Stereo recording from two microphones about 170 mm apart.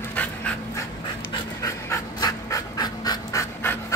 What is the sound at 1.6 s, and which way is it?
Pant, 15° left (ahead or behind).